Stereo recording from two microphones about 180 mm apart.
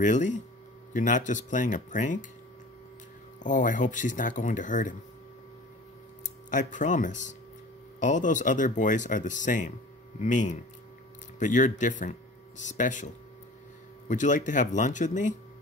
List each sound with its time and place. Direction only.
0.0 s speech: 45° left (ahead or behind)
3.4 s speech: 45° left (ahead or behind)
6.5 s speech: 45° left (ahead or behind)